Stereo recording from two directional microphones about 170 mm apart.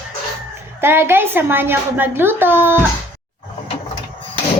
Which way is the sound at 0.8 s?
15° right (ahead or behind).